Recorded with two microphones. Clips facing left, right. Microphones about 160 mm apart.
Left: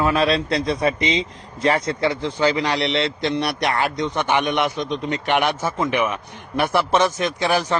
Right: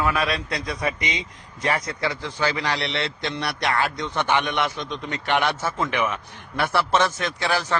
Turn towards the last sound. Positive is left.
turn(degrees=15)  # may be behind; listen again after turning